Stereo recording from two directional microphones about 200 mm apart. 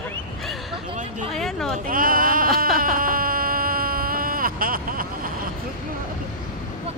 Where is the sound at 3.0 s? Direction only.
45° right (ahead or behind).